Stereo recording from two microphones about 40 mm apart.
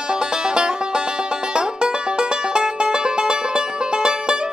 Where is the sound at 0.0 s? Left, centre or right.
Right.